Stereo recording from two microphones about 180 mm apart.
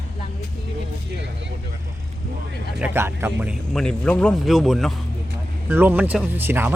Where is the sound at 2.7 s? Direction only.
10° right (ahead or behind).